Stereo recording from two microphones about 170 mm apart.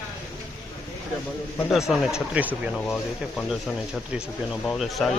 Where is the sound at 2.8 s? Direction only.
5° left (ahead or behind).